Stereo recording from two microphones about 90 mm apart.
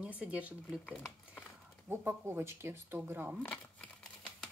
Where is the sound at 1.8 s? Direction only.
25° right (ahead or behind).